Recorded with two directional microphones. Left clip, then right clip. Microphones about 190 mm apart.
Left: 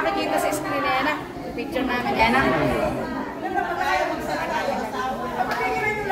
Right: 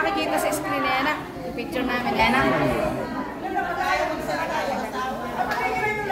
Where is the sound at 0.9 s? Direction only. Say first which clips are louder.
Left 1 dB; 40° right (ahead or behind).